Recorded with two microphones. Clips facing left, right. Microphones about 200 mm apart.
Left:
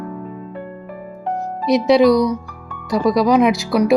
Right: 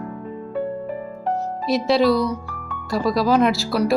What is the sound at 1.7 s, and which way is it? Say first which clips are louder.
Speech: left 5 dB; 20° left (ahead or behind).